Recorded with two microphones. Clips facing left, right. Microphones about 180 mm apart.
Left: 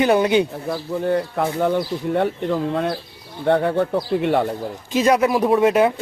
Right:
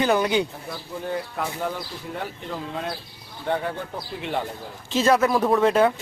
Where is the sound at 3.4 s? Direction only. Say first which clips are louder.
Left 9 dB; 65° left (ahead or behind).